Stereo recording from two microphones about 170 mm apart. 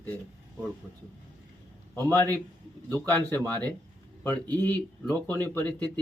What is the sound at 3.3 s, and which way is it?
Speech, 10° left (ahead or behind).